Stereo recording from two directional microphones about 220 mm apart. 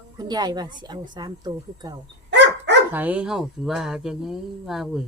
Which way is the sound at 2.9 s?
5° right (ahead or behind).